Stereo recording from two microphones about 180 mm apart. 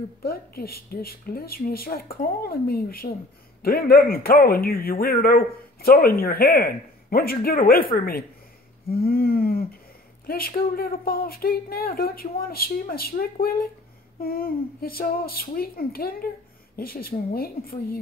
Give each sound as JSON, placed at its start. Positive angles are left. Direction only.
{"t": 0.2, "sound": "a man's voice", "side_deg": 60}
{"t": 8.8, "sound": "a sound", "side_deg": 55}
{"t": 10.2, "sound": "a man's voice", "side_deg": 55}